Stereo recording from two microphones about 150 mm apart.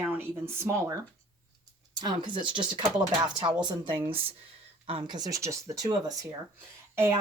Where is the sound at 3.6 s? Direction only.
30° right (ahead or behind).